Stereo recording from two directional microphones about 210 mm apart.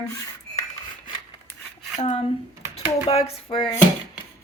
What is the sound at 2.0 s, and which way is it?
Speech, 30° left (ahead or behind).